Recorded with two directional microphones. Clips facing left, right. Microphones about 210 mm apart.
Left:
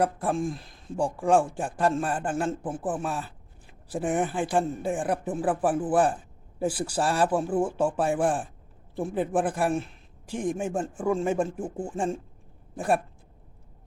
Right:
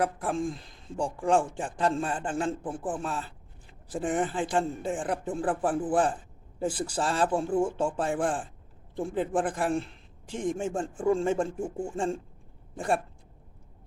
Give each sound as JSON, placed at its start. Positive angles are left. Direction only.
{"t": 0.0, "sound": "a man's voice", "side_deg": 10}
{"t": 11.6, "sound": "speech", "side_deg": 20}
{"t": 12.7, "sound": "speech", "side_deg": 5}